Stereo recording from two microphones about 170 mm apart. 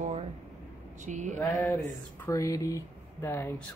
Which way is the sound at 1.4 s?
20° left (ahead or behind).